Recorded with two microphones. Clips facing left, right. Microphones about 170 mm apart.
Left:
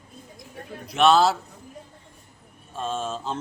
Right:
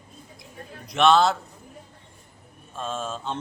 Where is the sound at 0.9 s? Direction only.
Centre (ahead or behind).